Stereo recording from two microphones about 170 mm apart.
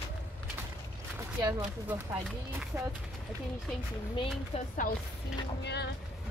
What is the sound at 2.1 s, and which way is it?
Speech, 5° right (ahead or behind).